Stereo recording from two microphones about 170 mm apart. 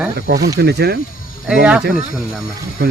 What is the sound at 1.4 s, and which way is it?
Speech, 5° right (ahead or behind).